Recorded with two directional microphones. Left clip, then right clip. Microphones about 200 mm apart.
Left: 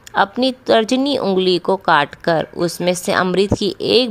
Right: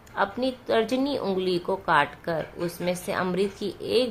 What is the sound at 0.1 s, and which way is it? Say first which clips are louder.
A woman's voice: left 10 dB; 50° left (ahead or behind).